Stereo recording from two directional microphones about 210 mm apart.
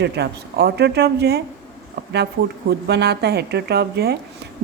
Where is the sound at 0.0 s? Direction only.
50° right (ahead or behind).